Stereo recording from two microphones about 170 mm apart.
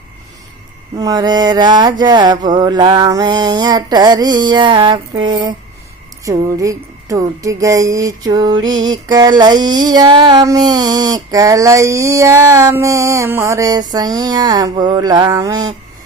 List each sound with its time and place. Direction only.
0.9 s music: 25° right (ahead or behind)